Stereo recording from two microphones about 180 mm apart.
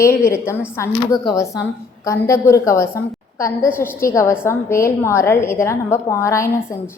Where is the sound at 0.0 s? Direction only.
15° left (ahead or behind).